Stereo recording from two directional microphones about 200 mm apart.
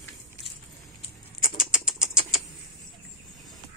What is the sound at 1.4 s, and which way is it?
Rodents, 5° right (ahead or behind).